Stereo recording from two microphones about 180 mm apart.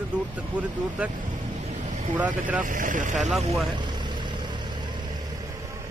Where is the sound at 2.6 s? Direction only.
45° right (ahead or behind).